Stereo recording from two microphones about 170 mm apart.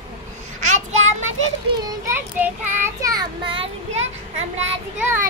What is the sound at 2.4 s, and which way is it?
A child's voice, 15° right (ahead or behind).